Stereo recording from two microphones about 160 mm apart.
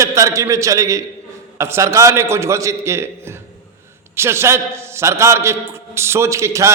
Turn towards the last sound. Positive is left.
turn(degrees=-15)  # may be behind; listen again after turning